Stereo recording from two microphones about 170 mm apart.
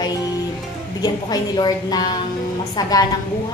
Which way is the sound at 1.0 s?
25° left (ahead or behind).